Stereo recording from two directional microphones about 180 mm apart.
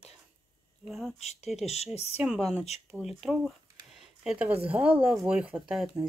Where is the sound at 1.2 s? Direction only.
40° left (ahead or behind).